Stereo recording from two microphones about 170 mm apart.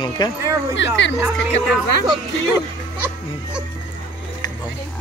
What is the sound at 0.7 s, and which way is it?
Speech, 90° left.